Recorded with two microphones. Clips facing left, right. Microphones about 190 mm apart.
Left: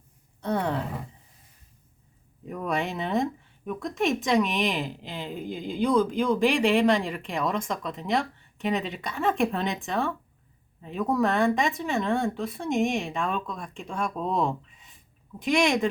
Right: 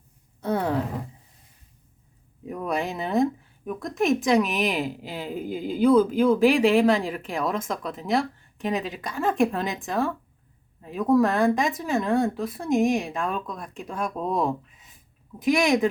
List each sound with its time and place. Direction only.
0.4 s speech: 5° right (ahead or behind)
2.5 s a sound: centre (ahead or behind)
3.7 s a woman's voice: centre (ahead or behind)